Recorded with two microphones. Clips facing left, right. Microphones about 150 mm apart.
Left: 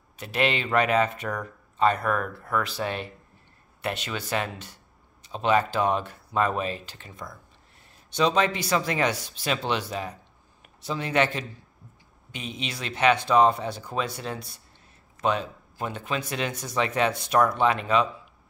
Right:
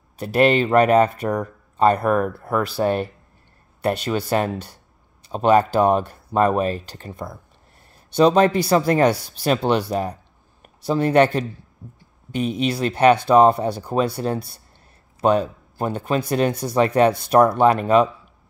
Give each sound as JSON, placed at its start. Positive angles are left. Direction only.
{"t": 0.2, "sound": "speech", "side_deg": -40}
{"t": 13.6, "sound": "speech", "side_deg": -35}